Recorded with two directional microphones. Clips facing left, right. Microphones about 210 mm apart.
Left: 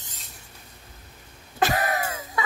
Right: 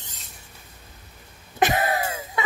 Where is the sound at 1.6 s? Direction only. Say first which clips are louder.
Right 2 dB; 20° right (ahead or behind).